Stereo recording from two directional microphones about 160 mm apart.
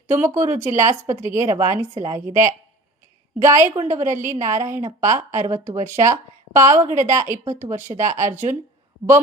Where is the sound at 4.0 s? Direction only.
50° right (ahead or behind).